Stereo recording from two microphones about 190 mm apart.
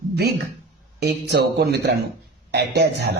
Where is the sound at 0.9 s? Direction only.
60° right (ahead or behind).